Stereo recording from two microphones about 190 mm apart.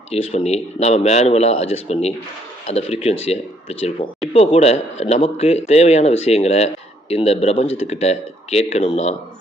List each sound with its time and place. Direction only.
0.1 s speech: 35° left (ahead or behind)